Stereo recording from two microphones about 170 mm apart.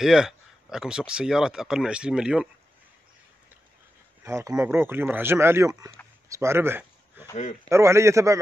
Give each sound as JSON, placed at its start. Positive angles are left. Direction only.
{"t": 0.0, "sound": "speech", "side_deg": -5}
{"t": 4.2, "sound": "speech", "side_deg": -15}
{"t": 6.2, "sound": "a sound", "side_deg": -15}
{"t": 7.7, "sound": "speech", "side_deg": -15}